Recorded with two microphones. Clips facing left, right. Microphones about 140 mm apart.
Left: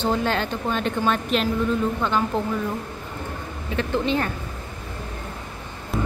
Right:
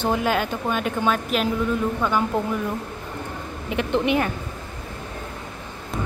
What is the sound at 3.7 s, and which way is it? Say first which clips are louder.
Speech: right 2 dB; 15° right (ahead or behind).